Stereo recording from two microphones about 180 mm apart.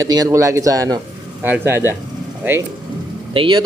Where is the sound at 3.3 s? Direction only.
30° right (ahead or behind).